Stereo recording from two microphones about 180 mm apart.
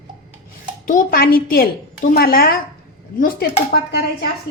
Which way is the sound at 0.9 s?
50° left (ahead or behind).